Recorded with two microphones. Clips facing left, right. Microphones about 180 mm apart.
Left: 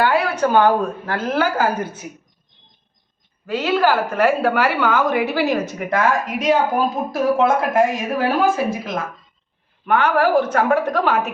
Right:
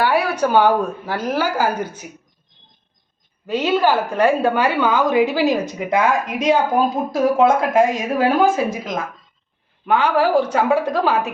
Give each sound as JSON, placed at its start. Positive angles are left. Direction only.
{"t": 0.0, "sound": "a woman's voice", "side_deg": -10}
{"t": 3.4, "sound": "a woman's voice", "side_deg": -20}